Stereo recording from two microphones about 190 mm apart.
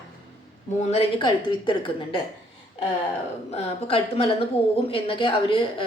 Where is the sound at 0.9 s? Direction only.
30° left (ahead or behind).